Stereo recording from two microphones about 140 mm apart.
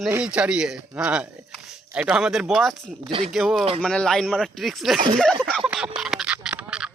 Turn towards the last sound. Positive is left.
turn(degrees=-5)  # may be behind; listen again after turning